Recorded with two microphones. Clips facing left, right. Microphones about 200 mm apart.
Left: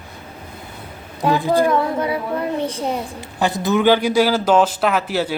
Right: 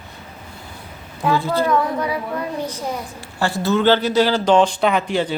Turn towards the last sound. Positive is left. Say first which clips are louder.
# right 1 dB
turn(degrees=5)  # may be behind; listen again after turning